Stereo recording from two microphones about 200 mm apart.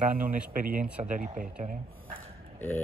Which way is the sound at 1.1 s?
40° right (ahead or behind).